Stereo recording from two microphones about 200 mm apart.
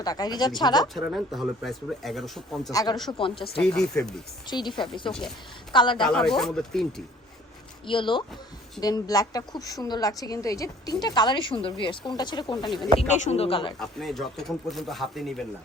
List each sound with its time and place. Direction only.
0.0 s a woman's voice: 20° left (ahead or behind)
0.9 s speech: centre (ahead or behind)
2.7 s a woman's voice: 20° left (ahead or behind)
3.8 s speech: 5° left (ahead or behind)
4.4 s a woman's voice: 20° left (ahead or behind)
5.7 s a woman's voice: 25° left (ahead or behind)
6.0 s speech: centre (ahead or behind)
7.9 s a woman's voice: 25° left (ahead or behind)
13.0 s a woman's voice: 35° left (ahead or behind)
13.7 s speech: centre (ahead or behind)